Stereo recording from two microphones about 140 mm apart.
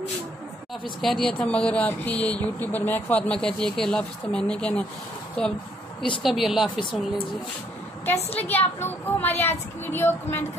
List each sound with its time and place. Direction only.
1.0 s a woman's voice: 5° left (ahead or behind)
8.5 s speech: 15° left (ahead or behind)